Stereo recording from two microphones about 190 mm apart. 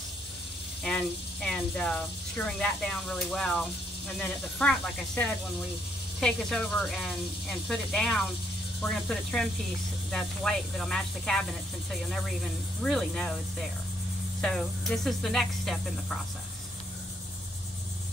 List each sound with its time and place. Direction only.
0.8 s speech: 5° left (ahead or behind)
14.4 s speech: centre (ahead or behind)